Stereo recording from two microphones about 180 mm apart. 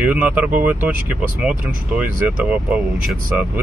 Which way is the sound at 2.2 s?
5° right (ahead or behind).